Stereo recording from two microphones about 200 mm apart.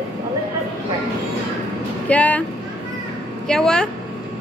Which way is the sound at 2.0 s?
5° left (ahead or behind).